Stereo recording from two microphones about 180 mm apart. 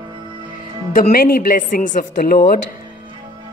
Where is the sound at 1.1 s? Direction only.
55° left (ahead or behind).